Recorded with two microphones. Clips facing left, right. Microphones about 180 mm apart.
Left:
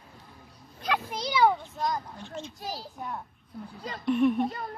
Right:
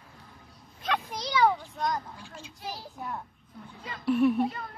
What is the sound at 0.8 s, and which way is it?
A child's voice, centre (ahead or behind).